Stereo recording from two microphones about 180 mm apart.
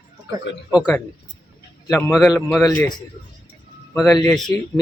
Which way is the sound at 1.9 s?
15° left (ahead or behind).